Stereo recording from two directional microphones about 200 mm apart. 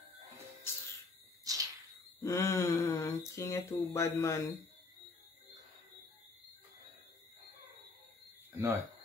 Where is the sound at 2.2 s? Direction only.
15° left (ahead or behind).